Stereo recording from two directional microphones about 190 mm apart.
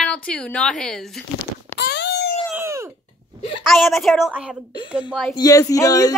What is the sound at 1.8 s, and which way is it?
Wail, 60° left (ahead or behind).